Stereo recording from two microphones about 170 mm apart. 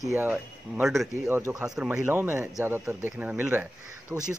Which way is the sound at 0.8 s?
Centre (ahead or behind).